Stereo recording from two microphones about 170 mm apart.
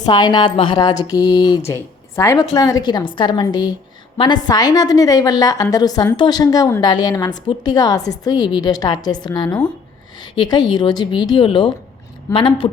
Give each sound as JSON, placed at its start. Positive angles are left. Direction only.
{"t": 0.0, "sound": "speech", "side_deg": 25}